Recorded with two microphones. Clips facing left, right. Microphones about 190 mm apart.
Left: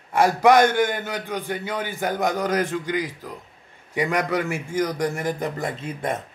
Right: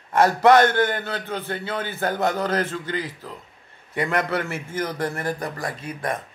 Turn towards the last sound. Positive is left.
turn(degrees=25)  # may be behind; listen again after turning